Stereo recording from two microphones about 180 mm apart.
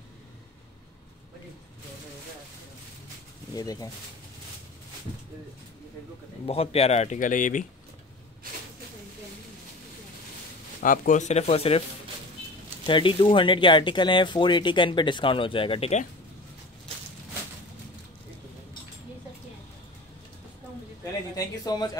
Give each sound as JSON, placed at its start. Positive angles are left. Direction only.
{"t": 3.5, "sound": "speech", "side_deg": 20}
{"t": 6.4, "sound": "speech", "side_deg": 35}
{"t": 10.8, "sound": "speech", "side_deg": 45}
{"t": 12.8, "sound": "speech", "side_deg": 30}
{"t": 21.0, "sound": "a sound", "side_deg": 20}